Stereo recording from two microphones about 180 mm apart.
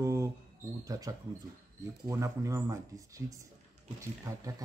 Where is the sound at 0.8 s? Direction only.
20° right (ahead or behind).